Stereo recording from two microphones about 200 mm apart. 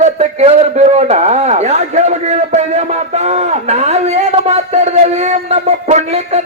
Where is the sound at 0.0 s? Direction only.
35° right (ahead or behind).